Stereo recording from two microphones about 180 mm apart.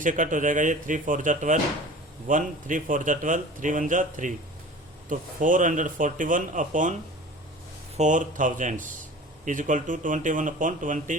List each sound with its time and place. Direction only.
0.0 s speech: 45° right (ahead or behind)
7.9 s speech: 45° right (ahead or behind)